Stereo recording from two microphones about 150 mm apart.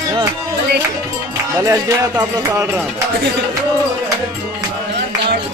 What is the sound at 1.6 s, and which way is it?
Music, 20° right (ahead or behind).